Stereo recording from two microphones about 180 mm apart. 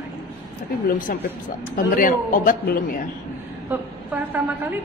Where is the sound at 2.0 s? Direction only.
50° left (ahead or behind).